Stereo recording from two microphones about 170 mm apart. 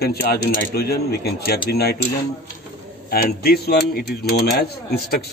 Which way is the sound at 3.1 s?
60° left (ahead or behind).